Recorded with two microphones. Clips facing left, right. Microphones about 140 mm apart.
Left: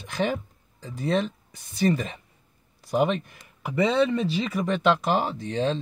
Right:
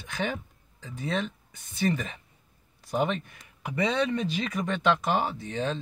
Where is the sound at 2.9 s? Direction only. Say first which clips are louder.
Left 4 dB; centre (ahead or behind).